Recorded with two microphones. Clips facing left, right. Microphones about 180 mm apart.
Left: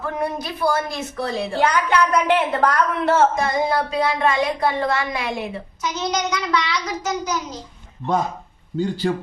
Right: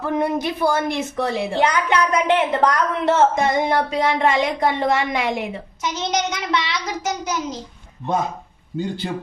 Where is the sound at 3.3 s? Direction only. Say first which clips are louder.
Right 2 dB; 20° right (ahead or behind).